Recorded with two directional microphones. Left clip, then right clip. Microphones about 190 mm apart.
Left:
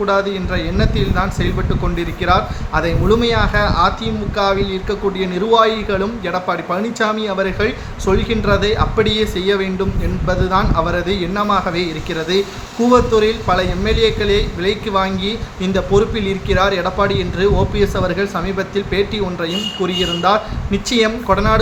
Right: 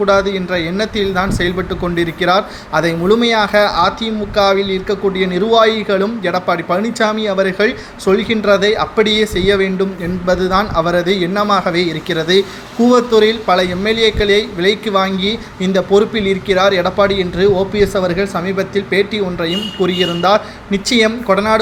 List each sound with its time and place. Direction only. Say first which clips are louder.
0.0 s a man's voice: right 4 dB; 15° right (ahead or behind)